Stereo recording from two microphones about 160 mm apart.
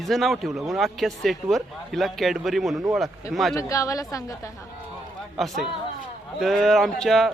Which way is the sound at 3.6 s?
20° left (ahead or behind).